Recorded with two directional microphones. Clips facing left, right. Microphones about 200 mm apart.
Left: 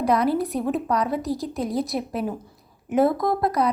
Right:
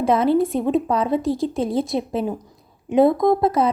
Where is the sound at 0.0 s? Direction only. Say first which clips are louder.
Right 4 dB; 25° right (ahead or behind).